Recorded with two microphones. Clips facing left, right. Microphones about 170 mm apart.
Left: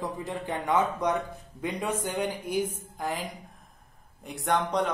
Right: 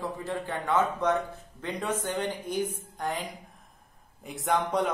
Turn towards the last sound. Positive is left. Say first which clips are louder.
# even
turn(degrees=0)  # may be behind; listen again after turning